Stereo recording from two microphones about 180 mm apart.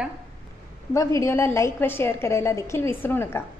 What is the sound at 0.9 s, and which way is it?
A woman's voice, 15° left (ahead or behind).